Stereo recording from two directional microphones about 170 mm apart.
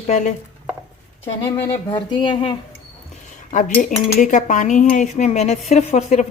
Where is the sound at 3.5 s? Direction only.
50° left (ahead or behind).